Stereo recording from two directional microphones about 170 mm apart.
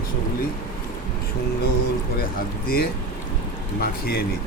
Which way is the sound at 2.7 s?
60° left (ahead or behind).